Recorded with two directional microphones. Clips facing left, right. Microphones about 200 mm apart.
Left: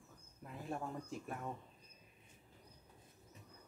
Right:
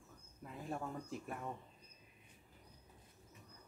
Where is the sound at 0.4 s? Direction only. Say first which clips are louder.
Even; centre (ahead or behind).